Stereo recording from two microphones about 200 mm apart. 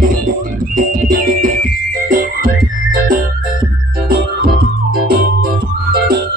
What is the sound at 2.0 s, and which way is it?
Music, 45° right (ahead or behind).